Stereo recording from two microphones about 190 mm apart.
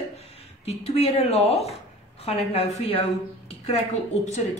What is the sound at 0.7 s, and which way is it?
A woman's voice, 35° left (ahead or behind).